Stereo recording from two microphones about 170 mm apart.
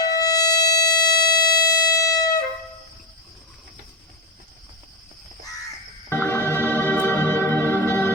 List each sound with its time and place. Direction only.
0.0 s music: 20° left (ahead or behind)
6.1 s organ: 15° left (ahead or behind)